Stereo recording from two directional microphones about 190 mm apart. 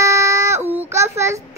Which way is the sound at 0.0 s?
15° right (ahead or behind).